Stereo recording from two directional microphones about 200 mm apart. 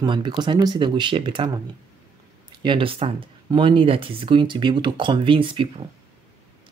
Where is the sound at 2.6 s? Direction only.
25° right (ahead or behind).